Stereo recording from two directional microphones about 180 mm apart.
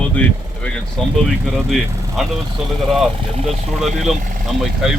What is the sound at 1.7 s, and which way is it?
Speech, centre (ahead or behind).